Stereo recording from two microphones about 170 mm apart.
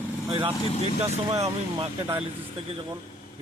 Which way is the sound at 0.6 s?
35° left (ahead or behind).